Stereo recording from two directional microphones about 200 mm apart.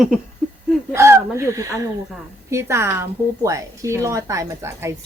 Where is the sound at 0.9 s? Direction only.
15° right (ahead or behind).